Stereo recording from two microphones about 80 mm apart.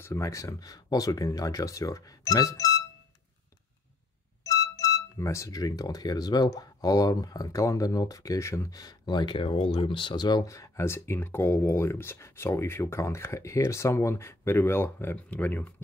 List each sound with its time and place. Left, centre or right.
0.0 s speech: left
4.4 s speech: left
8.7 s speech: left
10.5 s speech: left
15.1 s speech: centre